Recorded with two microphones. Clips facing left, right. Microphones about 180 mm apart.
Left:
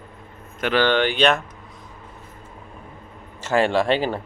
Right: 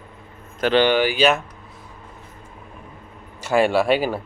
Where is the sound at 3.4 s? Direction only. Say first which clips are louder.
Right 2 dB; 10° right (ahead or behind).